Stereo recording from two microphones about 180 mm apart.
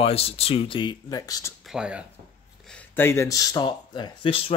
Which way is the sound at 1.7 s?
5° right (ahead or behind).